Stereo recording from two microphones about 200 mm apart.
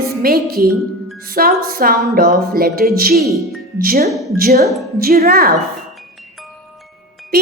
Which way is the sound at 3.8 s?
45° right (ahead or behind).